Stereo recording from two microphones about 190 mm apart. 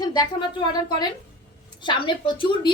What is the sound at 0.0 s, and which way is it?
A woman's voice, 20° left (ahead or behind).